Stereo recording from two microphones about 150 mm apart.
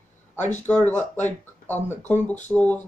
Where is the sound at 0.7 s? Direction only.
10° left (ahead or behind).